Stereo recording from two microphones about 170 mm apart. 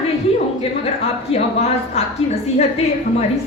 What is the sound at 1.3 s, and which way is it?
A woman's voice, 40° left (ahead or behind).